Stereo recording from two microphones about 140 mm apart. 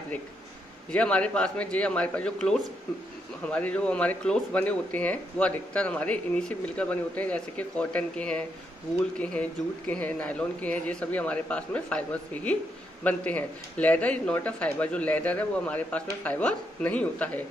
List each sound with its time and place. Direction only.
0.9 s speech: 10° left (ahead or behind)